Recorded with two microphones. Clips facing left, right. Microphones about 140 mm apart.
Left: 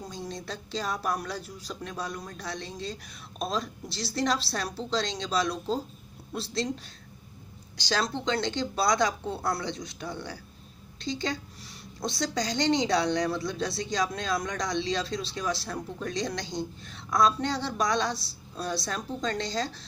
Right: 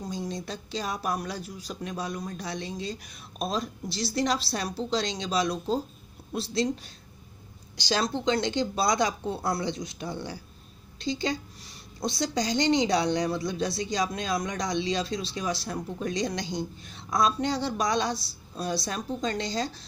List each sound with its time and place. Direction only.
0.1 s speech: 5° right (ahead or behind)
8.1 s speech: 10° right (ahead or behind)
11.1 s speech: 10° right (ahead or behind)